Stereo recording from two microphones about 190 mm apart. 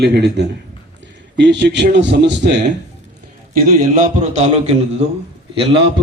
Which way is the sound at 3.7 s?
45° right (ahead or behind).